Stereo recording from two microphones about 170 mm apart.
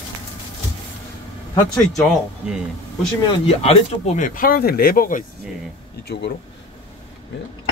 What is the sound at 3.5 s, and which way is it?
Speech, 35° left (ahead or behind).